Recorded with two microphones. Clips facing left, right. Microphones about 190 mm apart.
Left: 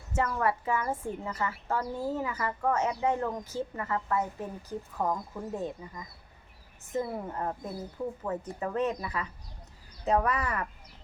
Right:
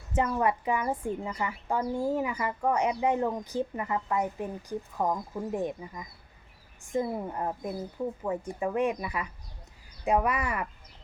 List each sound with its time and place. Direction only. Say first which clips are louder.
0.1 s a woman's voice: right 2 dB; 20° right (ahead or behind)